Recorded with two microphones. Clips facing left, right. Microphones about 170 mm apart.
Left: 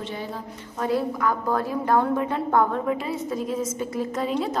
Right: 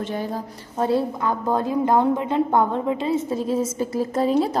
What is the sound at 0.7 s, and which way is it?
A woman's voice, 30° right (ahead or behind).